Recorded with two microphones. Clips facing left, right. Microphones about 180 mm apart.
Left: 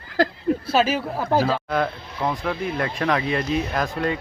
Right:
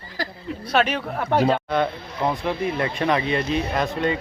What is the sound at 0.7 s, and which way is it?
Speech, 5° left (ahead or behind).